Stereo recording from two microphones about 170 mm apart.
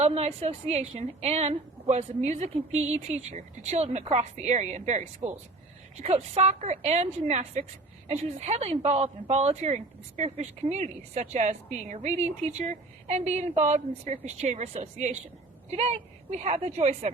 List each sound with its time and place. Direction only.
0.0 s speech: 40° right (ahead or behind)